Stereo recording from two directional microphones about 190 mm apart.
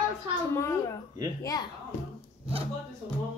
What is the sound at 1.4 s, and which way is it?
Speech, 20° left (ahead or behind).